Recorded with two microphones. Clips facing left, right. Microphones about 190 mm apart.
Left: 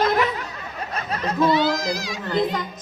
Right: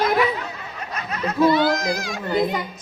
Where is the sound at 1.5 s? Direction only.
55° right (ahead or behind).